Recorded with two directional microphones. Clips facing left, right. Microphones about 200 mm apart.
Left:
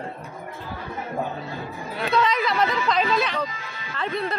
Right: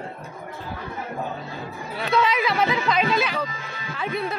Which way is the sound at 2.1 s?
5° right (ahead or behind).